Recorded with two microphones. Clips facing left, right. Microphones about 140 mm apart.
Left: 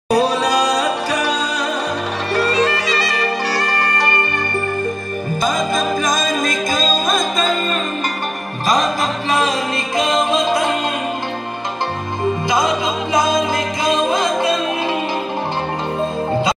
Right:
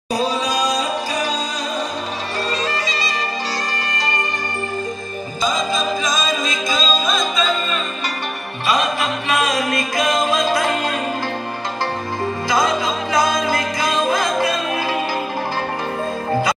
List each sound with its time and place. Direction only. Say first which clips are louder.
0.1 s music: left 5 dB; 65° left (ahead or behind)
5.4 s music: left 1 dB; 55° left (ahead or behind)
8.6 s music: left 2 dB; 35° left (ahead or behind)
12.4 s music: right 2 dB; 20° left (ahead or behind)